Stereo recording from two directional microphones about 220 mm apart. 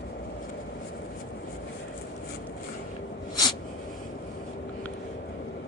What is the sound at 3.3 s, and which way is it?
Snort, 20° left (ahead or behind).